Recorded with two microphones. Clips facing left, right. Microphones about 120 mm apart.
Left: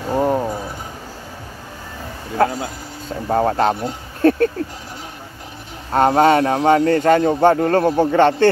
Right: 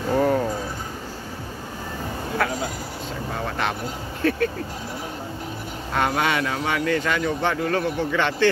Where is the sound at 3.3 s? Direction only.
40° left (ahead or behind).